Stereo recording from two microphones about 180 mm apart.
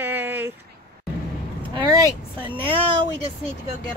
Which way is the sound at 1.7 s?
25° right (ahead or behind).